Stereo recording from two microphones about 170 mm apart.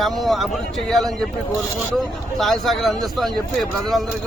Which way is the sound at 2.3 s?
Centre (ahead or behind).